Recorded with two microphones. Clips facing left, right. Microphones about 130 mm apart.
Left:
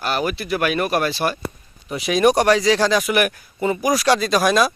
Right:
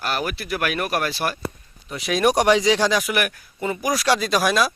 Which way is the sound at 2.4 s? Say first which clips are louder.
Left 1 dB; 15° right (ahead or behind).